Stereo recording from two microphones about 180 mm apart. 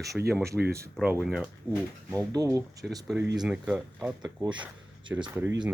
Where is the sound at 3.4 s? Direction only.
5° right (ahead or behind).